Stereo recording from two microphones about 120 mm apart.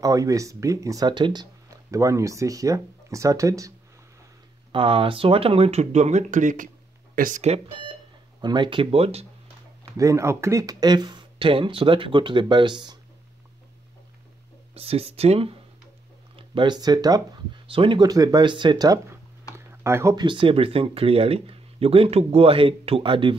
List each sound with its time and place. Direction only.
0.0 s speech: 30° right (ahead or behind)
4.7 s speech: 50° right (ahead or behind); by 6.7 s 90° right
7.3 s speech: 60° right (ahead or behind)
8.4 s speech: 40° right (ahead or behind); by 9.2 s 55° right (ahead or behind)
9.9 s speech: 25° right (ahead or behind)
14.7 s speech: 55° right (ahead or behind)
16.3 s speech: 40° right (ahead or behind)
17.6 s speech: 45° right (ahead or behind)
19.5 s a sound: 20° right (ahead or behind)
20.2 s speech: 45° right (ahead or behind)